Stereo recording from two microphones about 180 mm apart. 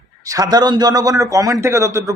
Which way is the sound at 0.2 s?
20° right (ahead or behind).